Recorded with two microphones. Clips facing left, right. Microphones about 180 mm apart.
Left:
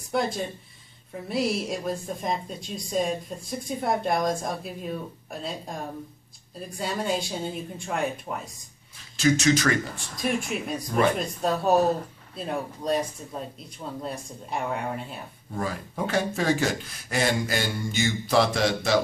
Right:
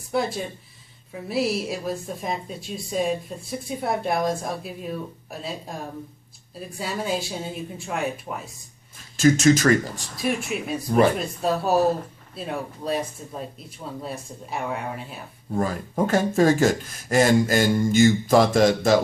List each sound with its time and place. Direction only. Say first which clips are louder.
0.1 s a woman's voice: right 1 dB; 5° right (ahead or behind)
9.1 s speech: right 4 dB; 45° right (ahead or behind)
10.1 s a woman's voice: right 1 dB; 5° right (ahead or behind)
15.5 s speech: right 6 dB; 45° right (ahead or behind)